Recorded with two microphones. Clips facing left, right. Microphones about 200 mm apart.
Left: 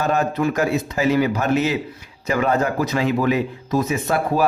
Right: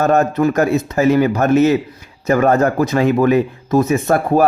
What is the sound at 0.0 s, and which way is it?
Speech, 45° right (ahead or behind).